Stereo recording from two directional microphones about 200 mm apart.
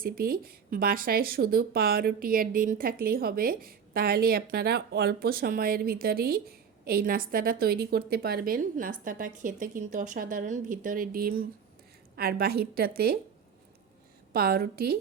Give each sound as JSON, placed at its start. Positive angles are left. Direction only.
{"t": 0.0, "sound": "speech", "side_deg": -45}
{"t": 14.3, "sound": "speech", "side_deg": -50}